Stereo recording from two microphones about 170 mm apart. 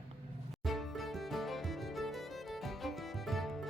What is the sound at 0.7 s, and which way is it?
Music, centre (ahead or behind).